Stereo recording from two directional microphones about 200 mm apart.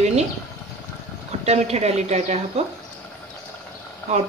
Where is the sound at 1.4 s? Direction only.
35° right (ahead or behind).